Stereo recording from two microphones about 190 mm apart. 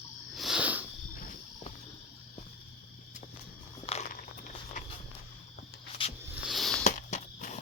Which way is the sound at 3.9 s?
30° left (ahead or behind).